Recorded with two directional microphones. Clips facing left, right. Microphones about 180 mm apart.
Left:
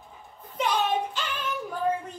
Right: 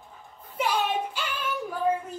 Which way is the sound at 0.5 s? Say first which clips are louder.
Left 1 dB; 10° right (ahead or behind).